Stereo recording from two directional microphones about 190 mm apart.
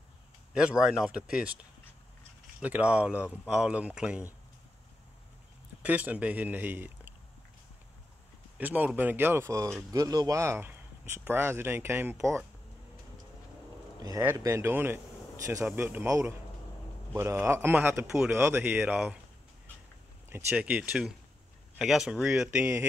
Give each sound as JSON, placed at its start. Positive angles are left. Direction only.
{"t": 0.6, "sound": "speech", "side_deg": -5}
{"t": 5.8, "sound": "a man's voice", "side_deg": -10}
{"t": 8.5, "sound": "speech", "side_deg": -10}
{"t": 14.0, "sound": "speech", "side_deg": -15}
{"t": 20.2, "sound": "speech", "side_deg": -10}